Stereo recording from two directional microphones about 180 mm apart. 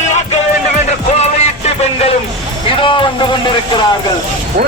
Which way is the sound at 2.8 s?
25° left (ahead or behind).